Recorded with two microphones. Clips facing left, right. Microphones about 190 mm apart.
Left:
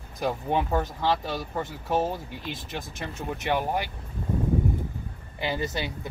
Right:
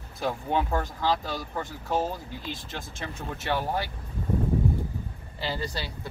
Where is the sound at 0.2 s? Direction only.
15° left (ahead or behind).